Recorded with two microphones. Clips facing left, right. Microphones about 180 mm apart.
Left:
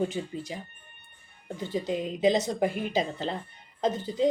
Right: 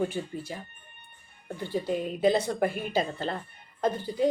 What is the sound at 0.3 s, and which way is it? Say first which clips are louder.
Speech: left 1 dB; 15° left (ahead or behind).